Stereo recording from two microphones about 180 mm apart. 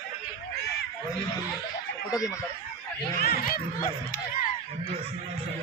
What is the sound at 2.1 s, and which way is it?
Speech, 20° left (ahead or behind).